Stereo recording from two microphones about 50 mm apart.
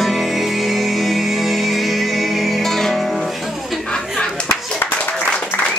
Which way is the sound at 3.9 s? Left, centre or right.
Centre.